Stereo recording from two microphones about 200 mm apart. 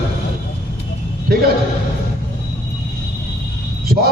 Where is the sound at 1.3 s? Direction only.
50° right (ahead or behind).